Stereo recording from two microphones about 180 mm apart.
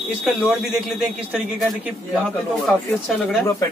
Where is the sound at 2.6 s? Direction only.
Centre (ahead or behind).